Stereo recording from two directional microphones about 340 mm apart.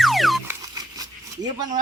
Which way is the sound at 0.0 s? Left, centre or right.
Centre.